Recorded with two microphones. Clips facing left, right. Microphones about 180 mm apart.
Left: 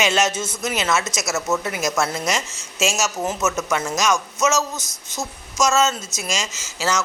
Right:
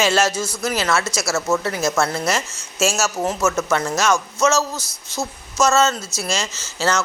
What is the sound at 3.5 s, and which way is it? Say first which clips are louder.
A man's voice: right 3 dB; 20° left (ahead or behind).